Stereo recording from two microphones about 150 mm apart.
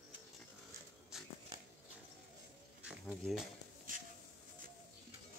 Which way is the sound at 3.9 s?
65° right (ahead or behind).